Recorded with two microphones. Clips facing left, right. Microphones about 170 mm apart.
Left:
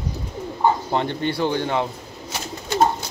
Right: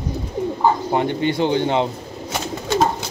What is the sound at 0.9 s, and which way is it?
Speech, 15° right (ahead or behind).